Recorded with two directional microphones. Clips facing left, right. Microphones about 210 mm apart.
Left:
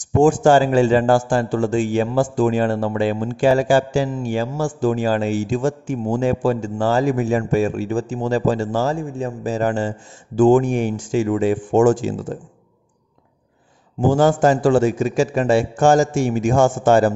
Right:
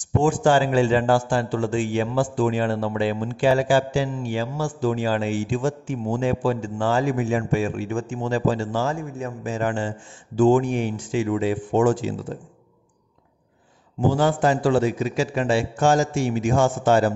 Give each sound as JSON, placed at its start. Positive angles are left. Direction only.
{"t": 0.0, "sound": "a man's voice", "side_deg": 45}
{"t": 14.0, "sound": "a man's voice", "side_deg": 45}